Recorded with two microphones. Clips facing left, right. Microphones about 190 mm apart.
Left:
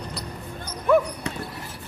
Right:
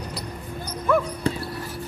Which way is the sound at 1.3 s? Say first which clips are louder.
Right 6 dB; 30° right (ahead or behind).